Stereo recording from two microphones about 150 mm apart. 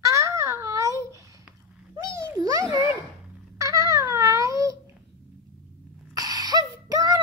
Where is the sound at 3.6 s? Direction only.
20° right (ahead or behind).